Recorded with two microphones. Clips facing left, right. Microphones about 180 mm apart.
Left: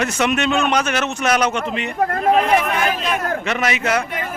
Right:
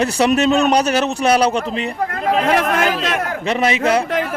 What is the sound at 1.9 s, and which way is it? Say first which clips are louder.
Speech: left 3 dB; 50° left (ahead or behind).